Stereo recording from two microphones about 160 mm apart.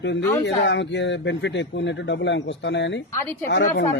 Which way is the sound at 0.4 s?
90° left.